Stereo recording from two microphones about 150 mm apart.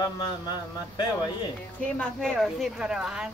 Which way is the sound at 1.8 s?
5° left (ahead or behind).